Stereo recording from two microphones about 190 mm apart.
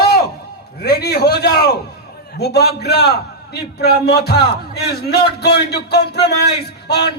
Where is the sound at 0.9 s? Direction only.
55° left (ahead or behind).